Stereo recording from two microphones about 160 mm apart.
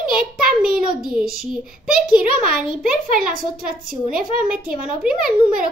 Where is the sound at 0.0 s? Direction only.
60° right (ahead or behind).